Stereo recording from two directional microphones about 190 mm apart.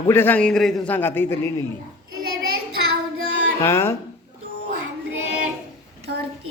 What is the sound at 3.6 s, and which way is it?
Speech, 15° left (ahead or behind).